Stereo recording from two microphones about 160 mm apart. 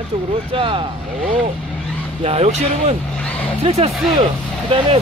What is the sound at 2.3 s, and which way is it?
Speech, 45° right (ahead or behind).